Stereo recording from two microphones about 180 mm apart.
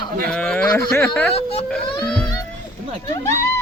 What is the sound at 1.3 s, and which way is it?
Speech, 35° left (ahead or behind).